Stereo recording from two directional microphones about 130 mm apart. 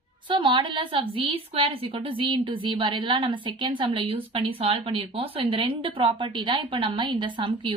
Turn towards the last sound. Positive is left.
turn(degrees=-40)  # may be behind; listen again after turning